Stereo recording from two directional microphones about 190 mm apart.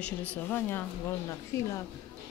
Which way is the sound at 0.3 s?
10° left (ahead or behind).